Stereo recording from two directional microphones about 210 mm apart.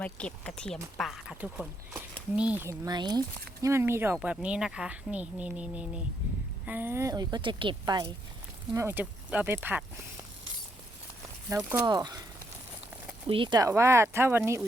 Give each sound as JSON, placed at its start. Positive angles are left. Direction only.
{"t": 0.0, "sound": "a woman's voice", "side_deg": 5}
{"t": 8.7, "sound": "a woman's voice", "side_deg": -10}
{"t": 11.4, "sound": "a woman's voice", "side_deg": -15}
{"t": 13.2, "sound": "a woman's voice", "side_deg": -25}